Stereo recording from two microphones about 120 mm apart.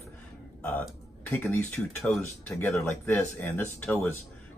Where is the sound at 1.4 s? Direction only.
15° left (ahead or behind).